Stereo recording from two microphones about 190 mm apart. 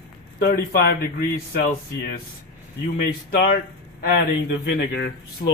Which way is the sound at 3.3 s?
55° left (ahead or behind).